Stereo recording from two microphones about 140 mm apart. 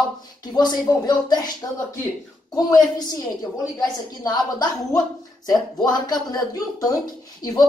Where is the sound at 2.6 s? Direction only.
30° left (ahead or behind).